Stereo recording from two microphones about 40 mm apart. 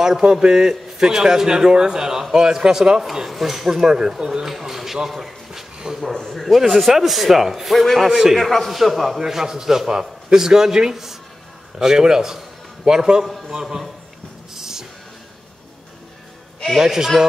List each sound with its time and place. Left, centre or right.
0.2 s a man's voice: right
3.0 s a man's voice: centre
6.1 s speech: centre
6.5 s speech: centre
8.1 s a man's voice: centre
8.4 s speech: centre
9.2 s a man's voice: centre
14.5 s music: centre
16.8 s a man's voice: centre